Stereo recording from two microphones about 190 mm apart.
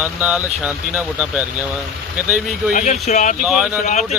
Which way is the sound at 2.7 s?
40° left (ahead or behind).